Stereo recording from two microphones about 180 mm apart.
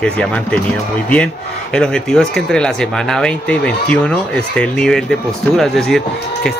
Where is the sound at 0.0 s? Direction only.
5° left (ahead or behind).